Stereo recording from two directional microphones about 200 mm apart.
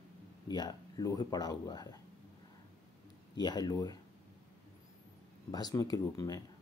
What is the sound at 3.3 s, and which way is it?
Speech, 20° left (ahead or behind).